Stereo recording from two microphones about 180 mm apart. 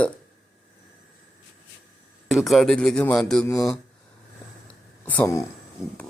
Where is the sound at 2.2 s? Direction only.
Centre (ahead or behind).